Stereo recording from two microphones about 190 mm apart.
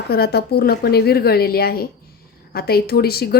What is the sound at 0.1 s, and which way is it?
A woman's voice, 55° left (ahead or behind).